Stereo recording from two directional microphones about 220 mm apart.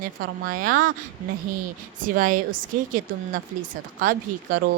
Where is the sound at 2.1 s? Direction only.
40° right (ahead or behind).